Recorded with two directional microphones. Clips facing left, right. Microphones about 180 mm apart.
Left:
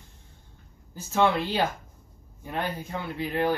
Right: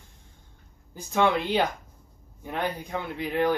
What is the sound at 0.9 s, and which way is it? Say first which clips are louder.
Speech: even; 15° right (ahead or behind).